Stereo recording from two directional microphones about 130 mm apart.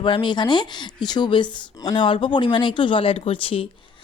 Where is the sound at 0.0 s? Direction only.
40° left (ahead or behind).